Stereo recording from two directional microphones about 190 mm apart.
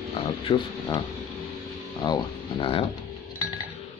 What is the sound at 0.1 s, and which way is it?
Speech, 25° left (ahead or behind).